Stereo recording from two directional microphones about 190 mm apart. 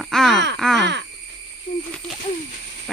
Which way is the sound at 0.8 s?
65° right (ahead or behind).